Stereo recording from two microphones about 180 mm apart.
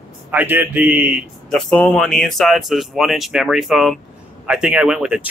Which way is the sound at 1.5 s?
5° left (ahead or behind).